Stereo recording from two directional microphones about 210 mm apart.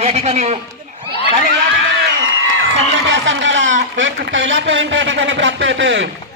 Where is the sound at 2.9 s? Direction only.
60° right (ahead or behind).